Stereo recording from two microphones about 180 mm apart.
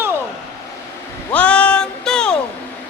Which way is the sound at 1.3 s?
5° left (ahead or behind).